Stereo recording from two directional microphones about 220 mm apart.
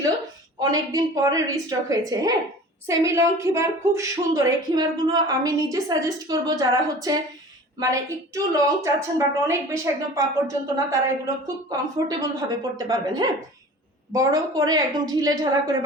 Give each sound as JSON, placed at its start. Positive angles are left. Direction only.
{"t": 0.6, "sound": "a woman's voice", "side_deg": -15}
{"t": 11.9, "sound": "a woman's voice", "side_deg": -15}